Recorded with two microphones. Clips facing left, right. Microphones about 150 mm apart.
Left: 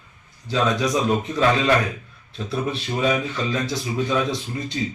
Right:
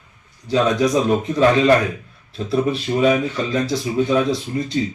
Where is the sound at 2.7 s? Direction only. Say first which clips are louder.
Right 5 dB; 35° right (ahead or behind).